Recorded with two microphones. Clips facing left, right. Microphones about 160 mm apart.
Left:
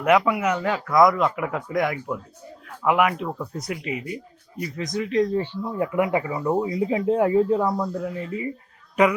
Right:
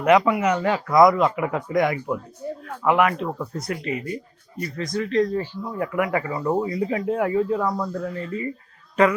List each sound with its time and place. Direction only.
0.0 s speech: 5° left (ahead or behind)
6.4 s speech: 5° left (ahead or behind)
6.7 s speech: 20° left (ahead or behind)